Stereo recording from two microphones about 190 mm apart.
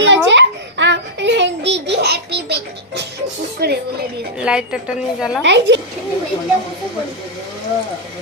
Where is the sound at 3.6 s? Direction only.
60° right (ahead or behind).